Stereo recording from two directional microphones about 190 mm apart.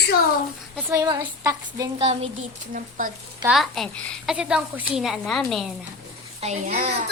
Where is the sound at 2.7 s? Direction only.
45° right (ahead or behind).